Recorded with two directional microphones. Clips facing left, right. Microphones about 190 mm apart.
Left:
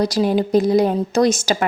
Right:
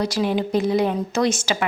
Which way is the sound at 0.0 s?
35° left (ahead or behind).